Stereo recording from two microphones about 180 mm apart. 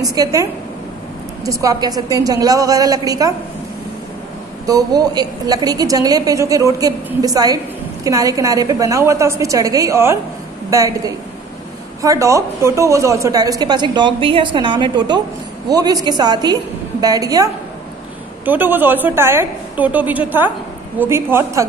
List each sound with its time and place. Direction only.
0.0 s a woman's voice: 20° right (ahead or behind)
4.6 s a woman's voice: 20° right (ahead or behind)